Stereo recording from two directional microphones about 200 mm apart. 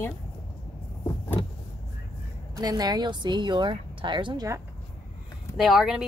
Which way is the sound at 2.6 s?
20° right (ahead or behind).